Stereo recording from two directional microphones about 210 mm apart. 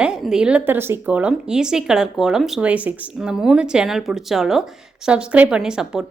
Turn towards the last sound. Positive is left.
turn(degrees=-5)  # may be behind; listen again after turning